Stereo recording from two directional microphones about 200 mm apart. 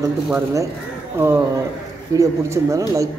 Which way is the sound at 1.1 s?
10° right (ahead or behind).